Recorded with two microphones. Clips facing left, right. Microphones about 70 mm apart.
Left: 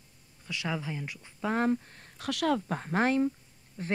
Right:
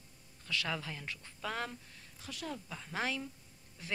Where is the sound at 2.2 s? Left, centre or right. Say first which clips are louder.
Left 15 dB; left.